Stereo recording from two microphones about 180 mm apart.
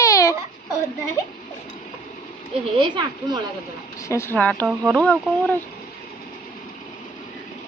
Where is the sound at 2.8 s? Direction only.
25° right (ahead or behind).